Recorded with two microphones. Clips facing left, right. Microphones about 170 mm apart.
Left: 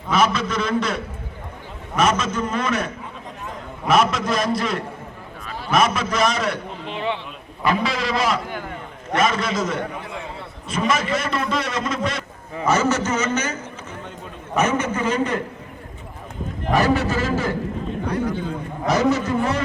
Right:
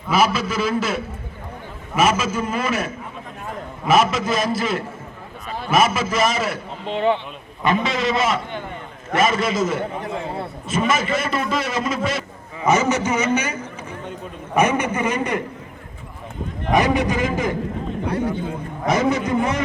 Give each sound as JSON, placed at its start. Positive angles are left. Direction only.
{"t": 0.1, "sound": "a man's voice", "side_deg": -5}
{"t": 6.9, "sound": "speech", "side_deg": -35}
{"t": 7.6, "sound": "a man's voice", "side_deg": 0}
{"t": 10.1, "sound": "a man's voice", "side_deg": -35}
{"t": 10.7, "sound": "a man's voice", "side_deg": -5}
{"t": 12.6, "sound": "a man's voice", "side_deg": -15}
{"t": 16.7, "sound": "a man's voice", "side_deg": -15}
{"t": 18.9, "sound": "a man's voice", "side_deg": -50}
{"t": 19.2, "sound": "a man's voice", "side_deg": -15}